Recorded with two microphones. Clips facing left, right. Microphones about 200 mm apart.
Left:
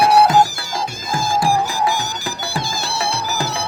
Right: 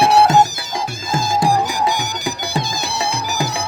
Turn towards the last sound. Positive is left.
turn(degrees=-15)  # may be behind; listen again after turning